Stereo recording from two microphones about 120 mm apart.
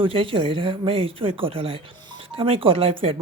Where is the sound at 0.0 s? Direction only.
50° right (ahead or behind).